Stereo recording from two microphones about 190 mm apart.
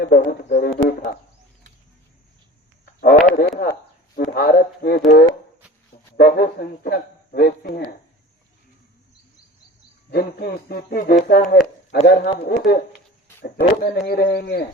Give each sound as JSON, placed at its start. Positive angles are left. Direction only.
{"t": 0.0, "sound": "speech", "side_deg": 55}
{"t": 3.0, "sound": "speech", "side_deg": 50}
{"t": 10.1, "sound": "speech", "side_deg": 55}
{"t": 12.5, "sound": "speech", "side_deg": 55}